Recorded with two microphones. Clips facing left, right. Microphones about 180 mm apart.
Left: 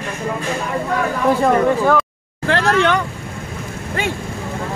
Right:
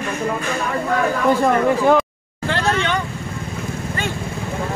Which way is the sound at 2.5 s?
90° left.